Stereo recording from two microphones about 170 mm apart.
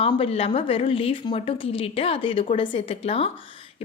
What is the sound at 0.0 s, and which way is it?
A woman's voice, 35° left (ahead or behind).